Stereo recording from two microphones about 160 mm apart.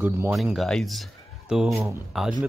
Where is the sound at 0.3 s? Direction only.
Centre (ahead or behind).